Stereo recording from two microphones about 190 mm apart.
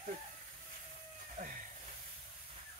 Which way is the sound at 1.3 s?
45° right (ahead or behind).